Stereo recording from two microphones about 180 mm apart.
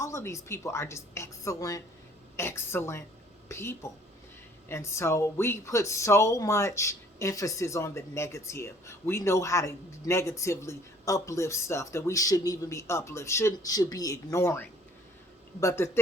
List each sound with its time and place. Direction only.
0.0 s speech: 15° left (ahead or behind)